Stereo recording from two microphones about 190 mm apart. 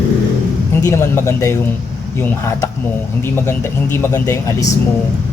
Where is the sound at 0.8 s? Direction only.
15° left (ahead or behind).